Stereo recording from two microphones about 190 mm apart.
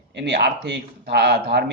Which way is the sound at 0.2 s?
65° right (ahead or behind).